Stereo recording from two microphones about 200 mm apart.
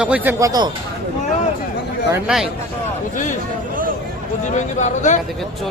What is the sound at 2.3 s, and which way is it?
Speech, 5° right (ahead or behind).